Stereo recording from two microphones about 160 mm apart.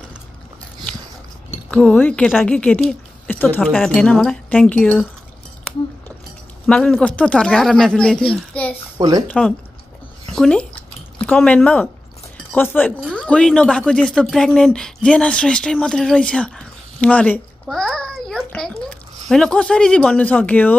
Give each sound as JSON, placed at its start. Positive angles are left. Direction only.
{"t": 1.7, "sound": "a woman's voice", "side_deg": 10}
{"t": 6.6, "sound": "speech", "side_deg": 0}
{"t": 8.9, "sound": "speech", "side_deg": -25}
{"t": 10.2, "sound": "a sound", "side_deg": 0}
{"t": 11.1, "sound": "a woman's voice", "side_deg": 10}